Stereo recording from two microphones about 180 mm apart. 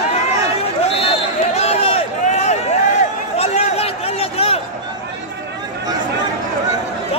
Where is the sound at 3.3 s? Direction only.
35° left (ahead or behind).